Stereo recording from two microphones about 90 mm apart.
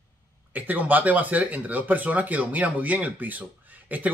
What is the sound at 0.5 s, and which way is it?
A man's voice, 20° right (ahead or behind).